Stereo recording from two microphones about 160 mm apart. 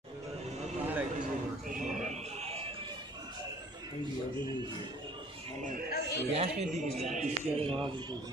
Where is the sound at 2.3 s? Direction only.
40° right (ahead or behind).